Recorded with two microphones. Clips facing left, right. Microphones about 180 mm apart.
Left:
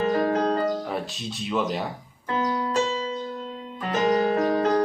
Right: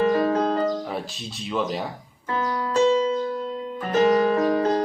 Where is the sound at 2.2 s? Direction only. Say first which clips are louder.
Even; 20° left (ahead or behind).